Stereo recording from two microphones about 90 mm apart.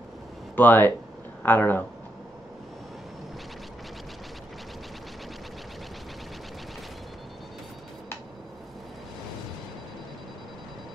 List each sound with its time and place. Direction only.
0.6 s speech: 20° left (ahead or behind)